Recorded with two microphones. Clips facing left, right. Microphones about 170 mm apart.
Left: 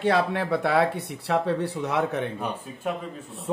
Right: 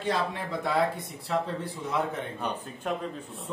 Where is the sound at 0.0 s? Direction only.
65° left (ahead or behind).